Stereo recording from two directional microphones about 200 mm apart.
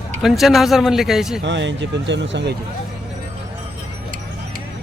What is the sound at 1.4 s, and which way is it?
Speech, 65° right (ahead or behind).